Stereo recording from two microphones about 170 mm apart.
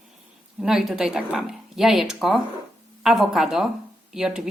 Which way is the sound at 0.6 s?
5° right (ahead or behind).